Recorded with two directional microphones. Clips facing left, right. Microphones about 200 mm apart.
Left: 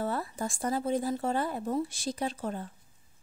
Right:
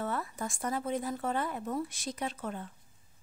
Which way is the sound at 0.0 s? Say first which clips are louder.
Left 3 dB; 30° left (ahead or behind).